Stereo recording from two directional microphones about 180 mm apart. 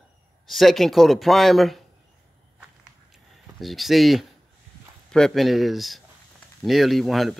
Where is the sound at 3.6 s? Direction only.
Centre (ahead or behind).